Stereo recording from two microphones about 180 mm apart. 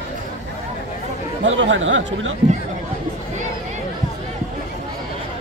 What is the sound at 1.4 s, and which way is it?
Speech, 90° right.